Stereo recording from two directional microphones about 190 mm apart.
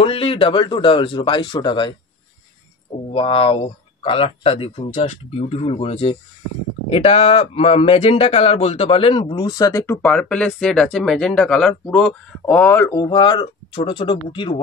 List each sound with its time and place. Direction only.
0.0 s speech: 30° left (ahead or behind)
3.1 s speech: 30° left (ahead or behind)
10.0 s speech: 5° left (ahead or behind); by 14.5 s 25° left (ahead or behind)